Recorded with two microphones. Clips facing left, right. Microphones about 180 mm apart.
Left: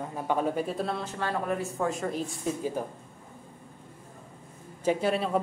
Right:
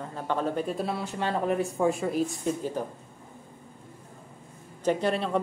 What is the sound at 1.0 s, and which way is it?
Speech, 15° right (ahead or behind).